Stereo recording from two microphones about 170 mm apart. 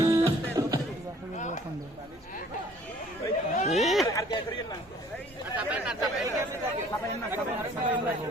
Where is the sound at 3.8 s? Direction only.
Centre (ahead or behind).